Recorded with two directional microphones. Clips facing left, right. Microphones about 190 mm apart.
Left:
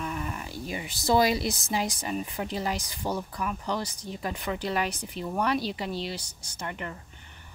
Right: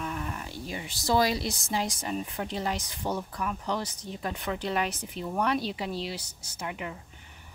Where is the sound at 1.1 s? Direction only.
15° left (ahead or behind).